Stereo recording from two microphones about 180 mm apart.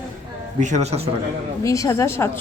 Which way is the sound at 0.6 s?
40° right (ahead or behind).